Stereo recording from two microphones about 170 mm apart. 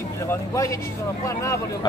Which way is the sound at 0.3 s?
20° left (ahead or behind).